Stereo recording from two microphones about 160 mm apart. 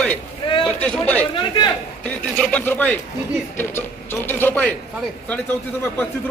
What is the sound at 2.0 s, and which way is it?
A man's voice, 10° left (ahead or behind).